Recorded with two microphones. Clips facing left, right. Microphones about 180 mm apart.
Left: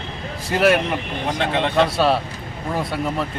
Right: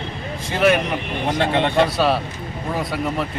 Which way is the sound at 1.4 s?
25° right (ahead or behind).